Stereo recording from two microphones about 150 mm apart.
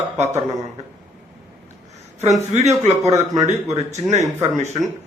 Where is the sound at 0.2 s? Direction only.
50° right (ahead or behind).